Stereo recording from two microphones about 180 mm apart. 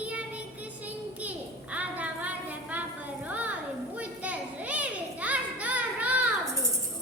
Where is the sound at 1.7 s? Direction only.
10° right (ahead or behind).